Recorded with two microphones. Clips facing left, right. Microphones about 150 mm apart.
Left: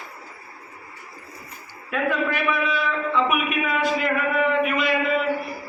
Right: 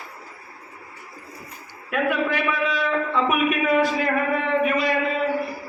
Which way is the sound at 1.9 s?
15° right (ahead or behind).